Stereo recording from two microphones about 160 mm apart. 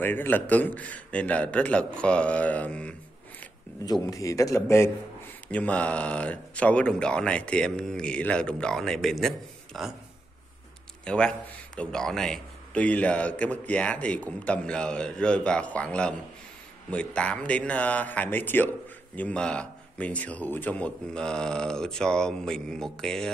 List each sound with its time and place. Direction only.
0.0 s a man's voice: 15° left (ahead or behind)
4.0 s a man's voice: 20° left (ahead or behind); by 9.9 s centre (ahead or behind)
11.1 s a man's voice: 5° left (ahead or behind)